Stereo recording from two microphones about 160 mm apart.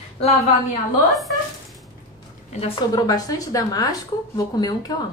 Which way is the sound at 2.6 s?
25° left (ahead or behind).